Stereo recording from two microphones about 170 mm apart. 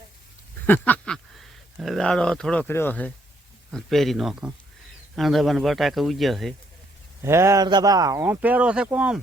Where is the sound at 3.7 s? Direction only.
Centre (ahead or behind).